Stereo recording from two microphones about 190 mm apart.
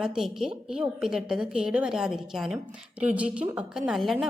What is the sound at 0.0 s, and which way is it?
A woman's voice, 5° right (ahead or behind).